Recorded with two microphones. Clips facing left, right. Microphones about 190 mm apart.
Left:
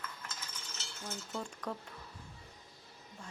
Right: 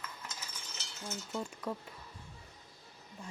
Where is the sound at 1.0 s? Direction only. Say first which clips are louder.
Right 2 dB; 5° right (ahead or behind).